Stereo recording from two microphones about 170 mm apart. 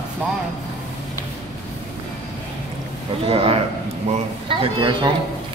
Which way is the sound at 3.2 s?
35° right (ahead or behind).